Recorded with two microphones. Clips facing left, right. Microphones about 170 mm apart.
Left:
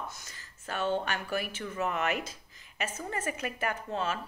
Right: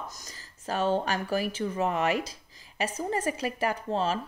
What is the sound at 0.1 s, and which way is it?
Speech, 40° right (ahead or behind).